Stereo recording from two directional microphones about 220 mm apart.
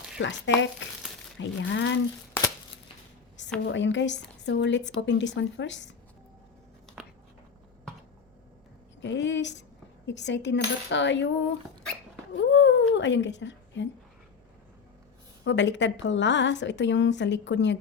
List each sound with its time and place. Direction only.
0.2 s a woman's voice: 55° left (ahead or behind)
3.7 s a woman's voice: 55° left (ahead or behind)
9.0 s a woman's voice: 55° left (ahead or behind)
15.4 s a woman's voice: 55° left (ahead or behind)